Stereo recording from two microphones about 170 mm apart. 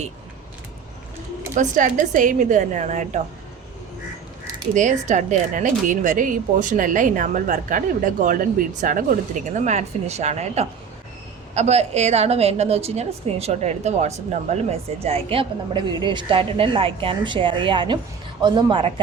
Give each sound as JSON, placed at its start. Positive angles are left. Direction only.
{"t": 1.5, "sound": "a woman's voice", "side_deg": -50}
{"t": 4.7, "sound": "a woman's voice", "side_deg": -45}